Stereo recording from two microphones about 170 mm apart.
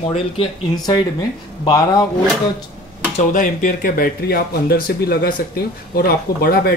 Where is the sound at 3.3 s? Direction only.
50° left (ahead or behind).